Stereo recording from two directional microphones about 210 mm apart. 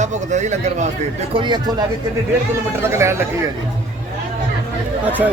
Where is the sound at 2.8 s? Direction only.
10° right (ahead or behind).